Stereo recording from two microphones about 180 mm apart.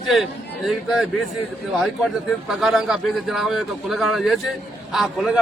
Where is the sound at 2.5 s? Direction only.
Centre (ahead or behind).